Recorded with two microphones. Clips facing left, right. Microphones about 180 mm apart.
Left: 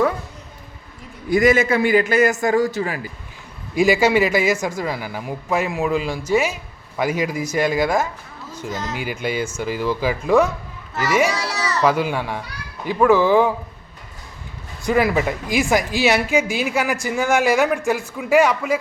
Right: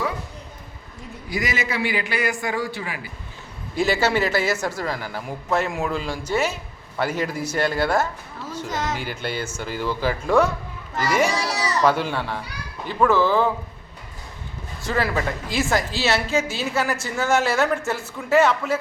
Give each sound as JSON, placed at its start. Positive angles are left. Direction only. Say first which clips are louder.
{"t": 1.3, "sound": "a man's voice", "louder": "left 11 dB", "side_deg": 50}
{"t": 3.8, "sound": "a woman's voice", "louder": "left 5 dB", "side_deg": 10}
{"t": 14.8, "sound": "a woman's voice", "louder": "left 5 dB", "side_deg": 15}